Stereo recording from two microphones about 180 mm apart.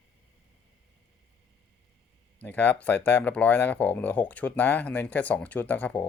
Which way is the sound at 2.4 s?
10° left (ahead or behind).